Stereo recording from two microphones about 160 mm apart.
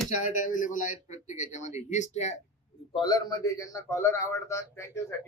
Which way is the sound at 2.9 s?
25° left (ahead or behind).